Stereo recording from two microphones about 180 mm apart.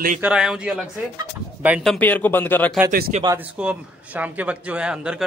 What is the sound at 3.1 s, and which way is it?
Speech, 40° right (ahead or behind).